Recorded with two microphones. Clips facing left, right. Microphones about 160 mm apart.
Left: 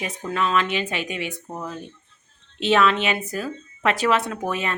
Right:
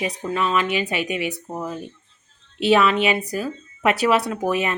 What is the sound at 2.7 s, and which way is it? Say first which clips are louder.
A woman's voice: right 2 dB; 5° right (ahead or behind).